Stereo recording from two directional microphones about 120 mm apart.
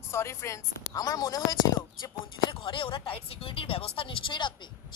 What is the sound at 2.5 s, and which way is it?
Speech, 45° left (ahead or behind).